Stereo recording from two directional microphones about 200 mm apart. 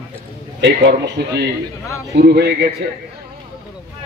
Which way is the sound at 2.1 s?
55° right (ahead or behind).